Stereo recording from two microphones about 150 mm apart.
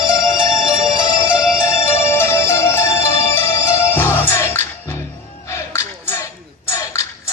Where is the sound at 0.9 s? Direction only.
25° left (ahead or behind).